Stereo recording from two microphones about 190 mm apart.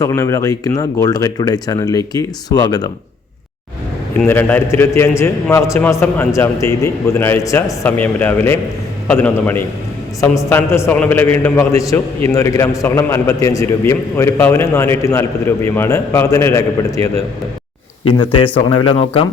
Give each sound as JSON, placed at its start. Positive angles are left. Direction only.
{"t": 0.0, "sound": "speech", "side_deg": 15}
{"t": 4.1, "sound": "a man's voice", "side_deg": 10}
{"t": 18.0, "sound": "speech", "side_deg": 25}